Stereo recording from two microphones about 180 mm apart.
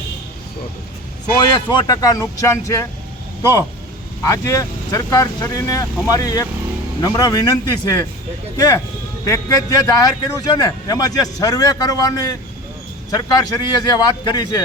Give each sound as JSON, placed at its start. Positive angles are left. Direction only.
{"t": 1.4, "sound": "a man's voice", "side_deg": 20}
{"t": 4.2, "sound": "a man's voice", "side_deg": 20}